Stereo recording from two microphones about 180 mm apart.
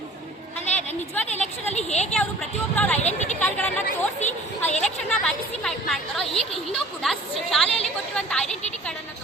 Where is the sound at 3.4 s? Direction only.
10° left (ahead or behind).